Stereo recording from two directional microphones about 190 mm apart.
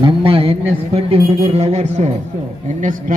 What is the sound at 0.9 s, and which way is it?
A woman's voice, 30° right (ahead or behind).